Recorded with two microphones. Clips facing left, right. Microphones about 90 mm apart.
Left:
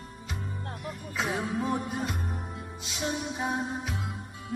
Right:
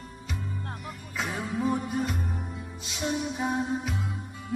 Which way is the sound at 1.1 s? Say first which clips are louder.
Left 1 dB; centre (ahead or behind).